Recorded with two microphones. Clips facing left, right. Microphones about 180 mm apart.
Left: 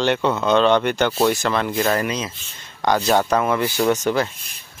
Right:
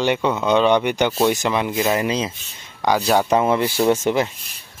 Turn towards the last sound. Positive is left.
turn(degrees=-25)  # may be behind; listen again after turning